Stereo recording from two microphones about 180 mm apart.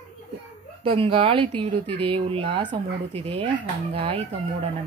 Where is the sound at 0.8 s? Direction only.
30° right (ahead or behind).